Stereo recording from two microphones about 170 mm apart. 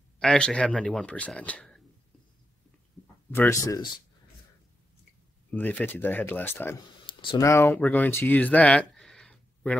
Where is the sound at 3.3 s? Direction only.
15° left (ahead or behind).